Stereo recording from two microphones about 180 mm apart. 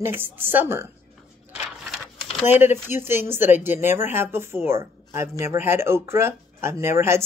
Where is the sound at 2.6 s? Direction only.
15° right (ahead or behind).